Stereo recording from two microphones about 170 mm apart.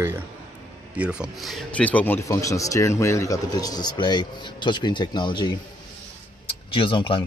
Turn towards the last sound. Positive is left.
turn(degrees=30)  # may be behind; listen again after turning